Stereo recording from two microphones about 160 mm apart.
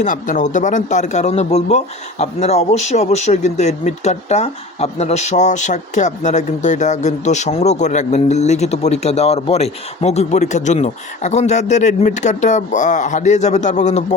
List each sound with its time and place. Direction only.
0.0 s speech: 55° left (ahead or behind)